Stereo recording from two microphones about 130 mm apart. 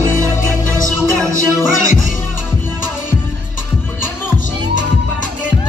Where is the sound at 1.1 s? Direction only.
25° right (ahead or behind).